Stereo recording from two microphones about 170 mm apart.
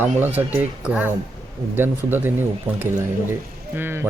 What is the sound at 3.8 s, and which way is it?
Speech, 10° right (ahead or behind).